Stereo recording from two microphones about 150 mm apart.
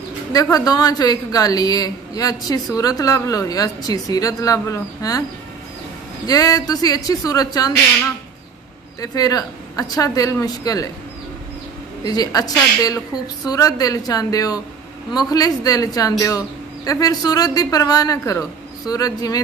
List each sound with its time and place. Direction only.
0.3 s a woman's voice: 25° left (ahead or behind)
6.2 s a woman's voice: 25° left (ahead or behind)
9.0 s a woman's voice: 25° left (ahead or behind)
12.0 s a woman's voice: 25° left (ahead or behind)